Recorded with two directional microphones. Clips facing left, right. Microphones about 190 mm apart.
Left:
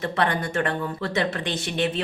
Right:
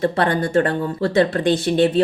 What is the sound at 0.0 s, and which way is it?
Speech, 35° right (ahead or behind).